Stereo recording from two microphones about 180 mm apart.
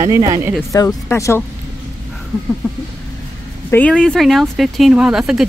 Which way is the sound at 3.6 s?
10° left (ahead or behind).